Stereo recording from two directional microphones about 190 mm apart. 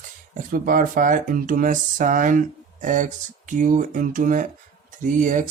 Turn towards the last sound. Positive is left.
turn(degrees=-40)  # may be behind; listen again after turning